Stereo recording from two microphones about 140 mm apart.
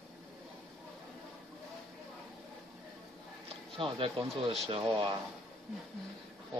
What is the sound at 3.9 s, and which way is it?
Speech, 40° right (ahead or behind).